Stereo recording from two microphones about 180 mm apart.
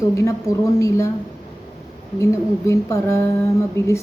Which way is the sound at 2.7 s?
15° left (ahead or behind).